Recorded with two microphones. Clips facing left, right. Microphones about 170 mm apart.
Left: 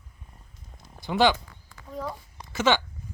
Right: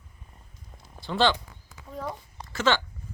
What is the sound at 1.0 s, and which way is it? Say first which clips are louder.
Speech: left 2 dB; 15° left (ahead or behind).